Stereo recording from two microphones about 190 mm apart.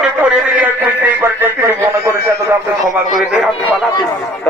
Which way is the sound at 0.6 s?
10° right (ahead or behind).